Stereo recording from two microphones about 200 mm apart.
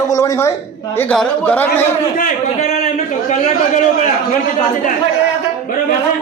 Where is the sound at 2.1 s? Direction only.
40° left (ahead or behind).